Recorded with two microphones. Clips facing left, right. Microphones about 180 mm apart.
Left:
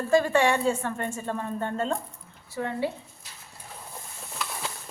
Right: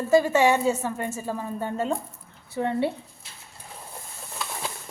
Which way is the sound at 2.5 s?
20° right (ahead or behind).